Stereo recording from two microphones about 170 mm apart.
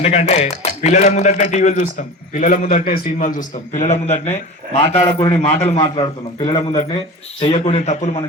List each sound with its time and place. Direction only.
0.0 s a man's voice: 40° left (ahead or behind)